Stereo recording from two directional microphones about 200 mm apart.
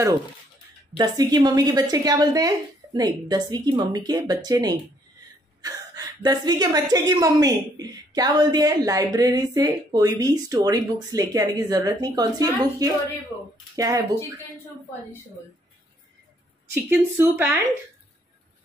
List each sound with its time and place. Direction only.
0.9 s a woman's voice: 20° right (ahead or behind)
16.9 s speech: 10° right (ahead or behind)